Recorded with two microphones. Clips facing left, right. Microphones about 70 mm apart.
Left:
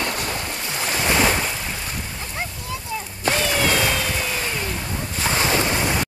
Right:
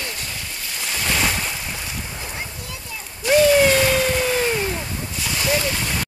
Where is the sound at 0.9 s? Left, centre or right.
Left.